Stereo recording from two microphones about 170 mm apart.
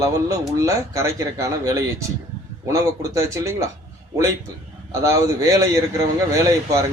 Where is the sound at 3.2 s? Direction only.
15° right (ahead or behind).